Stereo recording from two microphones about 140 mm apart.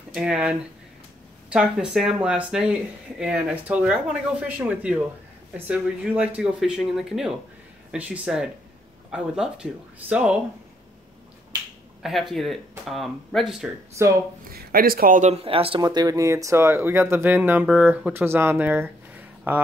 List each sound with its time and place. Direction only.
0.1 s speech: 5° right (ahead or behind)
12.0 s speech: centre (ahead or behind)
14.0 s speech: 20° right (ahead or behind)
14.4 s a man's voice: 90° right; by 15.3 s 70° right (ahead or behind)
15.4 s speech: 40° right (ahead or behind)
15.8 s speech: 30° right (ahead or behind); by 19.6 s 15° right (ahead or behind)